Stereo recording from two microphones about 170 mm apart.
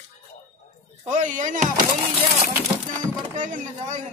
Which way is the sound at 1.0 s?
45° right (ahead or behind).